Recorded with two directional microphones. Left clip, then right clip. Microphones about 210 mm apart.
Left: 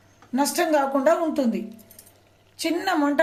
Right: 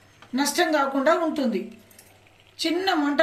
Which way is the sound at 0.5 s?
30° left (ahead or behind).